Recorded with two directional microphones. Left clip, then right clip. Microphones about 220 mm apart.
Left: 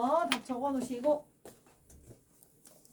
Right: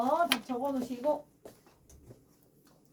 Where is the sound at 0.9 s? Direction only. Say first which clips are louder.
Left 1 dB; 5° left (ahead or behind).